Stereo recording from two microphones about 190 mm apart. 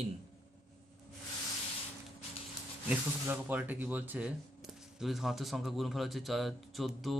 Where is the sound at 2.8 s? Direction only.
10° right (ahead or behind).